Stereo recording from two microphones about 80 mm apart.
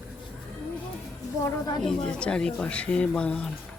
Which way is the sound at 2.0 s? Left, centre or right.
Centre.